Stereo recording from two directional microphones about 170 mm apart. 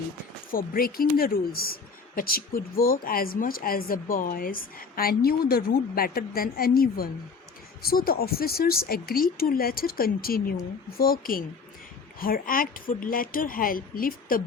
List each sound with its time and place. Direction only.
0.5 s speech: 60° left (ahead or behind)